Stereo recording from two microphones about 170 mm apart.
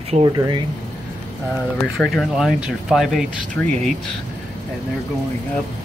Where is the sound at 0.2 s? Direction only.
25° right (ahead or behind).